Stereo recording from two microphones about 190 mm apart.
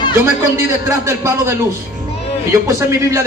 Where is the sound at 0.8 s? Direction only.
15° right (ahead or behind).